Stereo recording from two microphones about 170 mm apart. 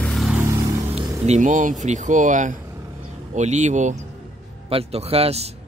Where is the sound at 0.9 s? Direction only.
40° right (ahead or behind).